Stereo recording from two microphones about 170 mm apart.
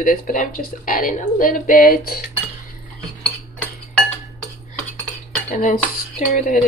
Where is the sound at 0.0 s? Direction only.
55° left (ahead or behind).